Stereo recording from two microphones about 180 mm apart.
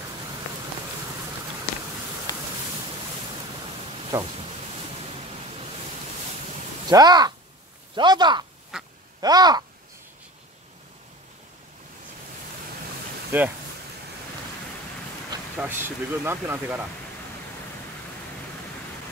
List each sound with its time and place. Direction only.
4.1 s speech: 15° right (ahead or behind)
6.9 s speech: 20° right (ahead or behind)
8.7 s quack: 5° right (ahead or behind)
9.2 s speech: 20° right (ahead or behind)
13.3 s speech: 10° right (ahead or behind)
15.5 s speech: 10° right (ahead or behind)